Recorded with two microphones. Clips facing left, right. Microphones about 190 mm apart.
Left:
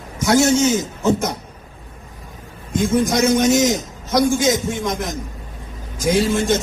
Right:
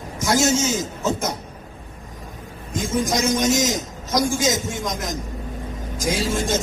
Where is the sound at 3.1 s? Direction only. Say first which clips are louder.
Left 4 dB; 60° left (ahead or behind).